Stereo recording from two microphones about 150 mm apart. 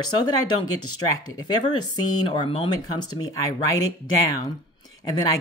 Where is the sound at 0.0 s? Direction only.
25° left (ahead or behind).